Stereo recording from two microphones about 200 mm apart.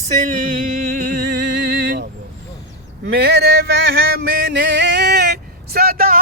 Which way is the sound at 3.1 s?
55° right (ahead or behind).